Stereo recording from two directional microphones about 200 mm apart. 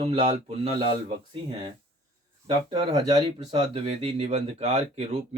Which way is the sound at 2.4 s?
20° right (ahead or behind).